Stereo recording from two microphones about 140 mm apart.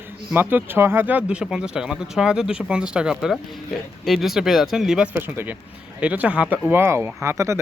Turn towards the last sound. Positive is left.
turn(degrees=-20)  # may be behind; listen again after turning